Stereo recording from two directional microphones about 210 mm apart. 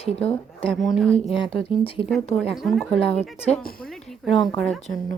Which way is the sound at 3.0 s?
30° left (ahead or behind).